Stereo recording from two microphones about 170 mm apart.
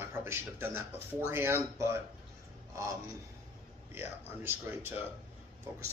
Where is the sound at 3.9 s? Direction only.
10° right (ahead or behind).